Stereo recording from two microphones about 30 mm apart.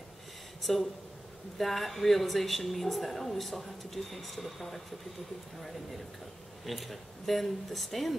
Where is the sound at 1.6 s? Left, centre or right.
Centre.